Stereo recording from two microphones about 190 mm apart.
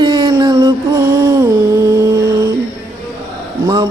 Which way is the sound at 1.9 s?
20° right (ahead or behind).